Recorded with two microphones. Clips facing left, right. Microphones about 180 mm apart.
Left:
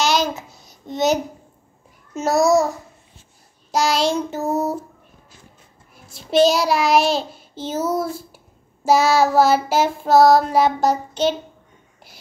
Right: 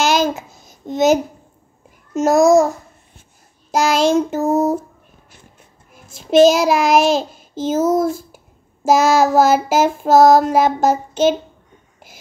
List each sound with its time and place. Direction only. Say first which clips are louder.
0.0 s a sound: right 3 dB; 50° right (ahead or behind)
2.1 s child singing: right 5 dB; 45° right (ahead or behind)
3.7 s child singing: right 4 dB; 50° right (ahead or behind)
6.0 s child singing: right 5 dB; 45° right (ahead or behind)